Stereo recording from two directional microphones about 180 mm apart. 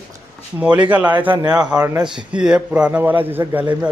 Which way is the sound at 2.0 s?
5° right (ahead or behind).